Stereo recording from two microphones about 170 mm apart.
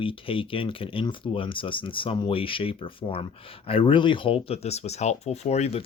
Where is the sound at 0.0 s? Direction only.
30° left (ahead or behind).